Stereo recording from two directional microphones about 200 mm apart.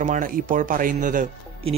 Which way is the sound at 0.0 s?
40° right (ahead or behind).